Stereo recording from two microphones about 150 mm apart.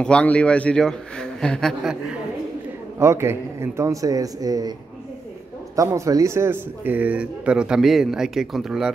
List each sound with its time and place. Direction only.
0.0 s a man's voice: 5° left (ahead or behind)
3.0 s a man's voice: 20° right (ahead or behind)
5.8 s speech: 20° right (ahead or behind); by 8.9 s centre (ahead or behind)